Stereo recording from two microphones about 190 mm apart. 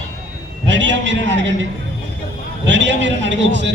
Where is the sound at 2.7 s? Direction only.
70° right (ahead or behind).